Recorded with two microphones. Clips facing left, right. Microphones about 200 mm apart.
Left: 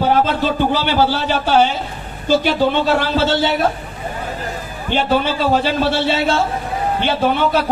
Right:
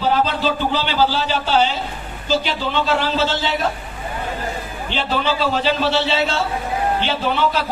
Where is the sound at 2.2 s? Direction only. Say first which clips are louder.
Left 6 dB; 50° left (ahead or behind).